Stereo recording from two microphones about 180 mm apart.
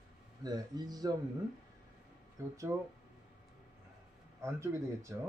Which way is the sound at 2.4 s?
15° right (ahead or behind).